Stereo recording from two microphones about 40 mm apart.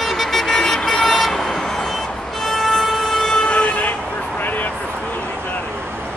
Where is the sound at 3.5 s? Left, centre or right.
Left.